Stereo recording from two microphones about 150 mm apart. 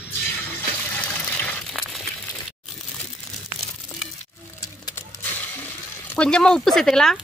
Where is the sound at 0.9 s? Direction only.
10° left (ahead or behind).